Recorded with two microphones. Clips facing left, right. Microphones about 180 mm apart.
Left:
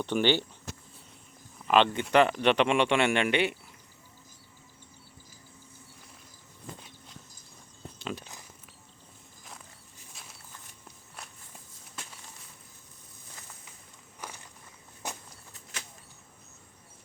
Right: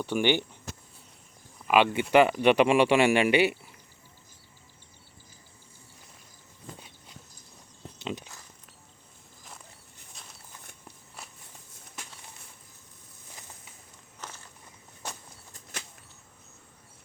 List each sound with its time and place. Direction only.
0.0 s speech: 10° right (ahead or behind)
1.6 s speech: 10° right (ahead or behind)
7.9 s a sound: 20° right (ahead or behind)
10.1 s walk: centre (ahead or behind)
14.2 s walk: 10° left (ahead or behind)